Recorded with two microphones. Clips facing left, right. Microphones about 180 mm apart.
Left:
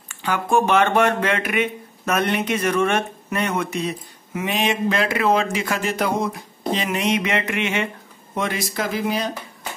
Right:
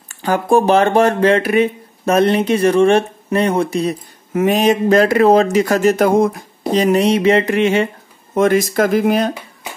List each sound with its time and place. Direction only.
0.1 s speech: 40° right (ahead or behind)
4.3 s speech: 45° right (ahead or behind)
6.7 s speech: 40° right (ahead or behind)
8.4 s speech: 50° right (ahead or behind)